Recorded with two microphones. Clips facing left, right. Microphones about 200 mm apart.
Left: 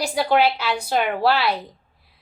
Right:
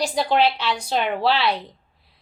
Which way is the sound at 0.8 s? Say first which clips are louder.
Left 2 dB; 55° left (ahead or behind).